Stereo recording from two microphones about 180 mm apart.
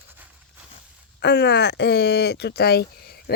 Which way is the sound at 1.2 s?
65° left (ahead or behind).